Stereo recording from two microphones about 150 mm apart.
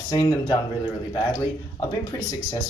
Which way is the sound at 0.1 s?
25° left (ahead or behind).